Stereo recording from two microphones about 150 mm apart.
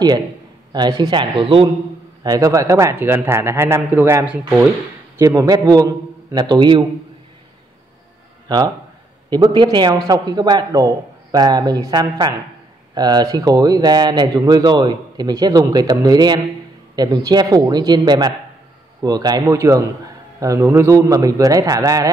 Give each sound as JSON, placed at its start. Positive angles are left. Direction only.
{"t": 0.7, "sound": "speech", "side_deg": -30}
{"t": 2.2, "sound": "a man's voice", "side_deg": -25}
{"t": 5.1, "sound": "a man's voice", "side_deg": -20}
{"t": 9.3, "sound": "a man's voice", "side_deg": -30}